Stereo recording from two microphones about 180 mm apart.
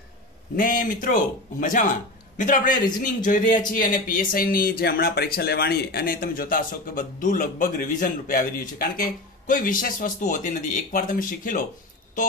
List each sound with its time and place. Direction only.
0.6 s a man's voice: 50° left (ahead or behind)